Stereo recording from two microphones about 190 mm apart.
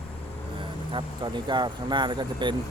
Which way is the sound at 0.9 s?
25° right (ahead or behind).